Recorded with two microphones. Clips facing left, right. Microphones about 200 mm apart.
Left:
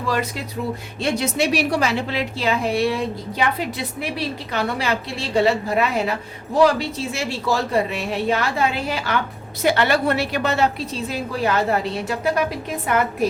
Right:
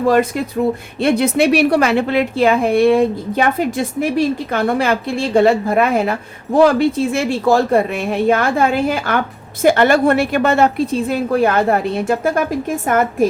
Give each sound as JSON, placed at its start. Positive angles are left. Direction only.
{"t": 0.0, "sound": "a woman's voice", "side_deg": -50}